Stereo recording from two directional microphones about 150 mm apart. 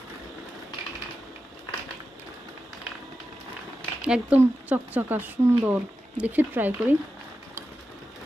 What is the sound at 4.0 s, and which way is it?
Speech, 10° right (ahead or behind).